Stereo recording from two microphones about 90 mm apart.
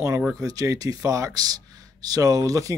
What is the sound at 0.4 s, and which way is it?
Speech, 40° right (ahead or behind).